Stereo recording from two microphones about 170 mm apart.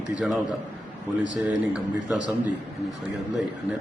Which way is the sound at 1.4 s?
5° right (ahead or behind).